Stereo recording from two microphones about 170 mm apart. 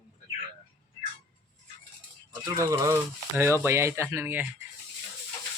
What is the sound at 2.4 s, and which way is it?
Speech, 20° right (ahead or behind).